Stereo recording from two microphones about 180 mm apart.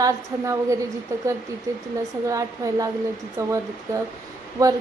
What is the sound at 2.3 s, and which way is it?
A woman's voice, 20° right (ahead or behind).